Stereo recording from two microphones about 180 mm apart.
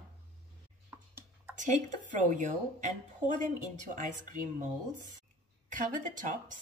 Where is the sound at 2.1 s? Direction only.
45° right (ahead or behind).